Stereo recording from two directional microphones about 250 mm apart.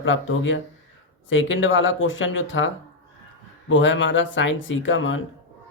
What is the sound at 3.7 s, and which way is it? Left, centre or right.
Speech, left.